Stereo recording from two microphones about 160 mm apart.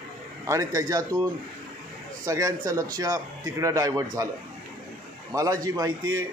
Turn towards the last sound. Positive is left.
turn(degrees=-20)  # may be behind; listen again after turning